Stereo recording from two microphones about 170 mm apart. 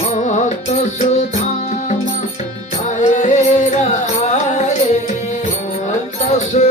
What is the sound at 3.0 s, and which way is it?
Music, 45° left (ahead or behind).